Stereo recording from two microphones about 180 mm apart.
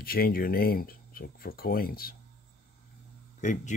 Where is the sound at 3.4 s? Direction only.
45° left (ahead or behind).